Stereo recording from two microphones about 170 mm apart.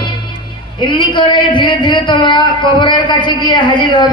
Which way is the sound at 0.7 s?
30° left (ahead or behind).